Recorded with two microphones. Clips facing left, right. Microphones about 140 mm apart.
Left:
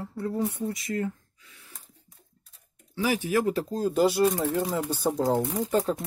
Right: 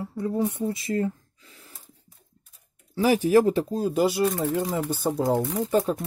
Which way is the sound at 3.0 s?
40° right (ahead or behind).